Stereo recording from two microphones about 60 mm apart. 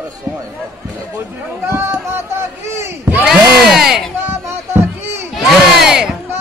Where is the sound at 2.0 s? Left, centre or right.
Right.